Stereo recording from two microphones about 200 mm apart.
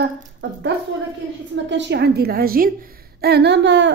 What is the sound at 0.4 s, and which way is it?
A woman's voice, 60° right (ahead or behind).